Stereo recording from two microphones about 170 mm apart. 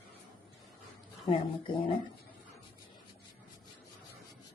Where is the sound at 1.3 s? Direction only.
30° left (ahead or behind).